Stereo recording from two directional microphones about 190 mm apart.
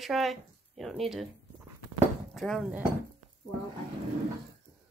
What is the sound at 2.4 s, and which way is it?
Speech, centre (ahead or behind).